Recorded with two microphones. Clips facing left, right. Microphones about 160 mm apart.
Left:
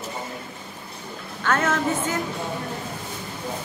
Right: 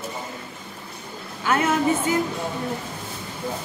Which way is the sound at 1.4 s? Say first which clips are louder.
Right 1 dB; 10° right (ahead or behind).